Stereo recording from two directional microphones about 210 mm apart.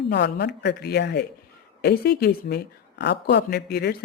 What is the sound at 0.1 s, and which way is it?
Speech, 55° left (ahead or behind).